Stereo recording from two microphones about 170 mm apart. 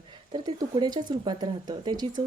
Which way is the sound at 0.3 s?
25° right (ahead or behind).